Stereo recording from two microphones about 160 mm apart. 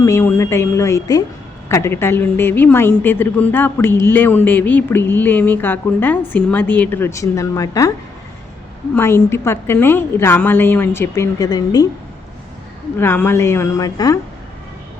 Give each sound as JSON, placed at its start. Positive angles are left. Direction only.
{"t": 0.0, "sound": "a woman's voice", "side_deg": 20}
{"t": 9.0, "sound": "a woman's voice", "side_deg": 15}
{"t": 13.0, "sound": "a woman's voice", "side_deg": 15}